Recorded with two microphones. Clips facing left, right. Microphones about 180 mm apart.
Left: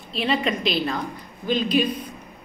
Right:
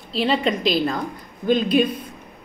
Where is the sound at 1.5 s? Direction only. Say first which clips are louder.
Right 4 dB; 50° right (ahead or behind).